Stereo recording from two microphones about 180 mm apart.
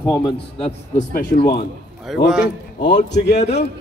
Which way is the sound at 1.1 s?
55° left (ahead or behind).